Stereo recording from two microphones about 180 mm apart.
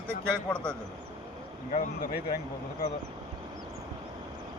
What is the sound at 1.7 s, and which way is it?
Speech, 50° left (ahead or behind).